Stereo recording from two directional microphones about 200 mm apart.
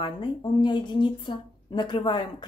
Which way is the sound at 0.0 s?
20° left (ahead or behind).